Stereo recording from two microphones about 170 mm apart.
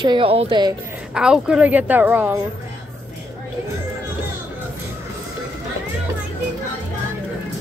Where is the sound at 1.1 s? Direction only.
5° right (ahead or behind).